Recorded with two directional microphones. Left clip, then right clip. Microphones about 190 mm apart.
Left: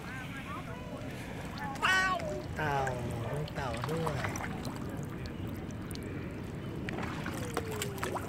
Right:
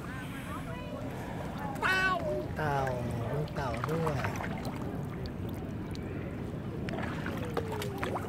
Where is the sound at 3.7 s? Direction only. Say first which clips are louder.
Right 3 dB; 50° left (ahead or behind).